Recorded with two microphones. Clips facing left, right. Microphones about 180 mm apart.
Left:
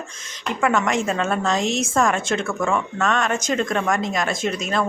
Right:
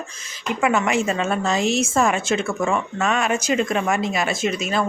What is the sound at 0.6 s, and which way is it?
Speech, 5° right (ahead or behind).